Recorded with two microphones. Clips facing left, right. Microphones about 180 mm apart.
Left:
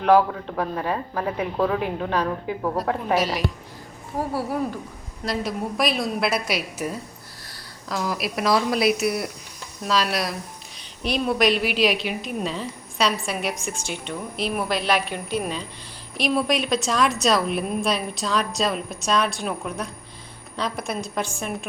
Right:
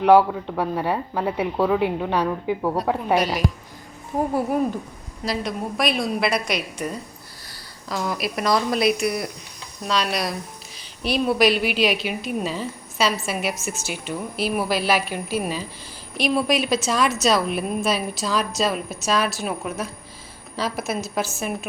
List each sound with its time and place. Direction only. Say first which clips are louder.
0.0 s speech: right 3 dB; 10° right (ahead or behind)
3.2 s a woman's voice: right 1 dB; centre (ahead or behind)
4.2 s speech: right 4 dB; 20° right (ahead or behind)
5.2 s a woman's voice: even; centre (ahead or behind)